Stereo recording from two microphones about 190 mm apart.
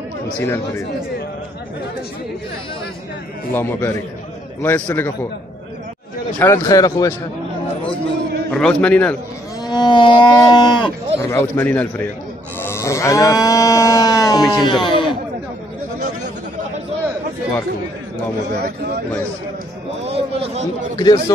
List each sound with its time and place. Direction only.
0.4 s a man's voice: 10° left (ahead or behind)
3.5 s a man's voice: 10° left (ahead or behind)
6.4 s speech: 15° left (ahead or behind)
8.5 s speech: 5° left (ahead or behind)
9.7 s livestock: 25° left (ahead or behind)
11.2 s a man's voice: 10° left (ahead or behind)
12.6 s livestock: 15° left (ahead or behind)
14.5 s speech: 25° left (ahead or behind)
14.9 s a sound: 25° left (ahead or behind)
20.1 s a man's voice: 30° right (ahead or behind)
20.9 s speech: 25° left (ahead or behind)